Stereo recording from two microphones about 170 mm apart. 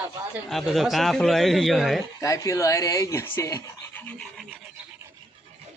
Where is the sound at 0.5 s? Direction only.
Centre (ahead or behind).